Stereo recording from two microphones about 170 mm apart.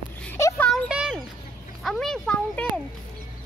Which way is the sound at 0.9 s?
5° right (ahead or behind).